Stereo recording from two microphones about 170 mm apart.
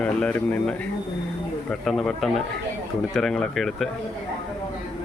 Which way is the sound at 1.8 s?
Centre (ahead or behind).